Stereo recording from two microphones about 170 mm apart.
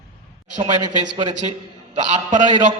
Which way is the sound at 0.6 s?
30° right (ahead or behind).